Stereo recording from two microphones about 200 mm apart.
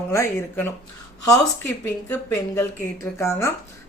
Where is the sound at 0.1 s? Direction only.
10° left (ahead or behind).